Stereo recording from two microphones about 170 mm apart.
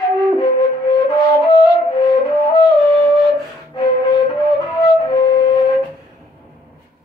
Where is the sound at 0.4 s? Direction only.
25° left (ahead or behind).